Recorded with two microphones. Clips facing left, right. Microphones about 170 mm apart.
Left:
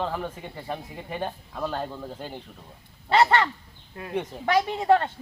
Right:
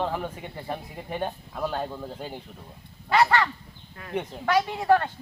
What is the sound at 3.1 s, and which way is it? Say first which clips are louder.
Speech: left 1 dB; 25° left (ahead or behind).